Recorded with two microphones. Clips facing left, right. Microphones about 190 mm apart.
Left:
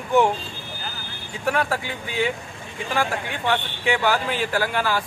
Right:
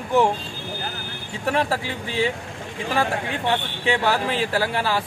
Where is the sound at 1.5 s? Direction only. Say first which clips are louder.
Right 1 dB; 30° right (ahead or behind).